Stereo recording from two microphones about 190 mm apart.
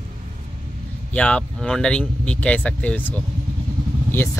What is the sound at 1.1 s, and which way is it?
Speech, 5° left (ahead or behind).